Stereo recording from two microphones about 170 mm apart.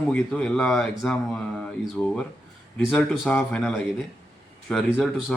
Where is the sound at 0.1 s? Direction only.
5° left (ahead or behind).